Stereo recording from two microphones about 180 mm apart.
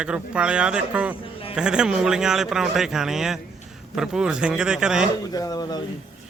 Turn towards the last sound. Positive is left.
turn(degrees=20)  # may be behind; listen again after turning